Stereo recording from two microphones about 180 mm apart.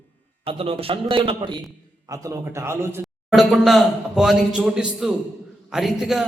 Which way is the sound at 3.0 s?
Centre (ahead or behind).